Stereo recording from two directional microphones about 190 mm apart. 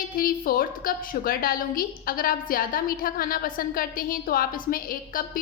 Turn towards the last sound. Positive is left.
turn(degrees=50)  # may be behind; listen again after turning